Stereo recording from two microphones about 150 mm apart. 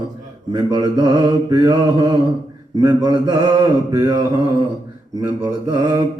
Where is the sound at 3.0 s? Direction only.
25° right (ahead or behind).